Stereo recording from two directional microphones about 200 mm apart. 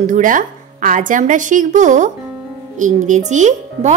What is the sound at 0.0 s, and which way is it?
Speech, 40° right (ahead or behind).